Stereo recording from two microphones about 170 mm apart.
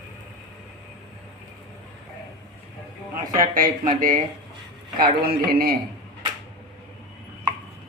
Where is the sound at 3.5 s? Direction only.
55° right (ahead or behind).